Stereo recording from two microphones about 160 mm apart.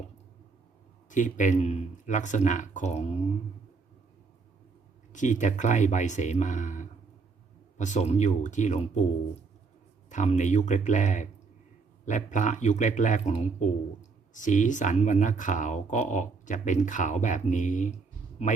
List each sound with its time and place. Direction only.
1.1 s speech: 50° left (ahead or behind)
5.1 s speech: 50° left (ahead or behind)
10.1 s speech: 50° left (ahead or behind)